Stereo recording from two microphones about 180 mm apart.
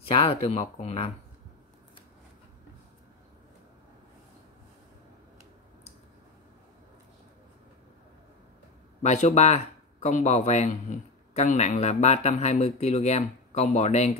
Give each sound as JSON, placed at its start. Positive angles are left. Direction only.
{"t": 0.0, "sound": "speech", "side_deg": 30}
{"t": 9.0, "sound": "speech", "side_deg": 40}